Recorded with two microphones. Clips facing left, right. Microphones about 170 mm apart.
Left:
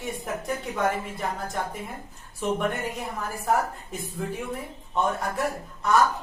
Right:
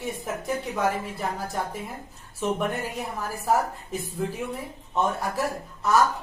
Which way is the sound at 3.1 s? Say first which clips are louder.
Right 1 dB; 5° right (ahead or behind).